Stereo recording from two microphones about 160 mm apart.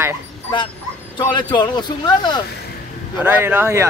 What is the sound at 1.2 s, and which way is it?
Speech, 30° left (ahead or behind).